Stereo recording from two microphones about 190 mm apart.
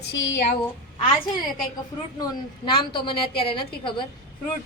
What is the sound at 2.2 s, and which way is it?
A woman's voice, 25° left (ahead or behind).